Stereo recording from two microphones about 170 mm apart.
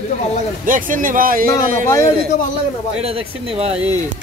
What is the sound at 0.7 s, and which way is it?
Speech, 50° right (ahead or behind).